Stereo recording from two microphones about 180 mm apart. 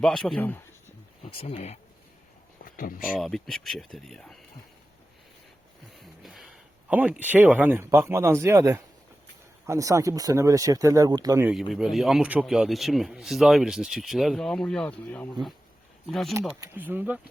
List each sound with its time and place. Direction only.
0.0 s speech: centre (ahead or behind)
1.3 s speech: 30° left (ahead or behind)
2.6 s a sound: 50° left (ahead or behind)
3.0 s speech: centre (ahead or behind)
6.0 s speech: centre (ahead or behind); by 11.4 s 20° right (ahead or behind)
11.4 s speech: centre (ahead or behind)
16.6 s speech: 10° right (ahead or behind)